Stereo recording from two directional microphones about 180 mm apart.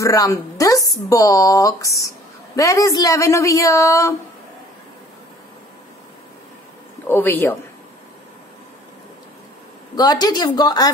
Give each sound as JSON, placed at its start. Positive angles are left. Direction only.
{"t": 0.0, "sound": "a woman's voice", "side_deg": 20}
{"t": 7.1, "sound": "a woman's voice", "side_deg": 10}
{"t": 9.9, "sound": "a woman's voice", "side_deg": 20}